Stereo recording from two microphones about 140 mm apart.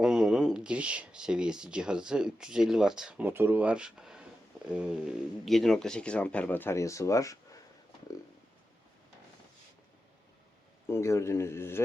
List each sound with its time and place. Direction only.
0.0 s speech: 5° right (ahead or behind); by 7.6 s 25° left (ahead or behind)
10.8 s speech: 20° left (ahead or behind)